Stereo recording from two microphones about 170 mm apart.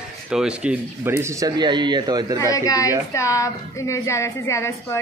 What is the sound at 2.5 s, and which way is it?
A woman's voice, 20° left (ahead or behind).